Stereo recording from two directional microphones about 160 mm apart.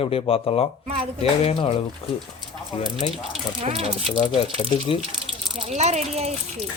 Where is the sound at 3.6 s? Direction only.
35° right (ahead or behind).